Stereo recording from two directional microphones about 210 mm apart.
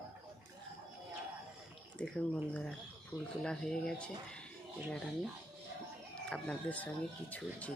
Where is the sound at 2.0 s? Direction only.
5° left (ahead or behind).